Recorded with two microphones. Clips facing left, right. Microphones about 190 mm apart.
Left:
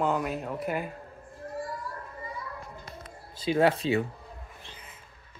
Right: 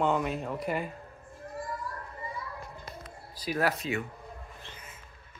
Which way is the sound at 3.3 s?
25° left (ahead or behind).